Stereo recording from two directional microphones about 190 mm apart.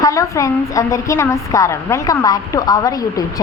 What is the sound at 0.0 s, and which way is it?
A woman's voice, 15° left (ahead or behind).